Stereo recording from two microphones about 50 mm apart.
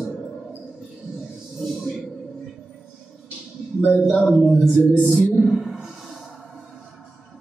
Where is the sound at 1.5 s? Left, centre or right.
Centre.